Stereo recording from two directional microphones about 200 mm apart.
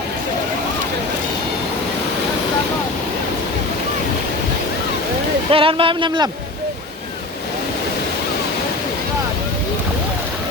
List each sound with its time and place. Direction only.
5.5 s speech: 25° right (ahead or behind)